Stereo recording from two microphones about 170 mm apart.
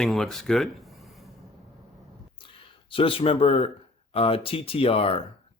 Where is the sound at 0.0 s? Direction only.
Centre (ahead or behind).